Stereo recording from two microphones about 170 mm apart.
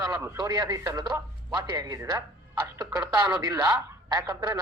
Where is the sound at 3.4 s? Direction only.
20° right (ahead or behind).